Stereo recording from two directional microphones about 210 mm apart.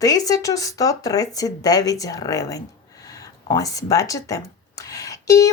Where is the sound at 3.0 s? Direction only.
15° left (ahead or behind).